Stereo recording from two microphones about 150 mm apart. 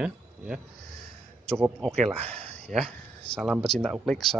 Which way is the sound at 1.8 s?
5° left (ahead or behind).